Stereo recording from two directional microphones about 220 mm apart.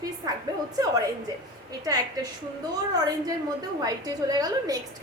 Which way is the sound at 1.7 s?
15° right (ahead or behind).